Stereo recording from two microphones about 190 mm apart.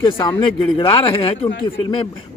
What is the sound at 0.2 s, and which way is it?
Speech, 20° left (ahead or behind).